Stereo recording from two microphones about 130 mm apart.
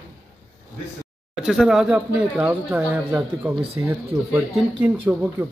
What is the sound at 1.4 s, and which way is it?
Speech, 5° right (ahead or behind).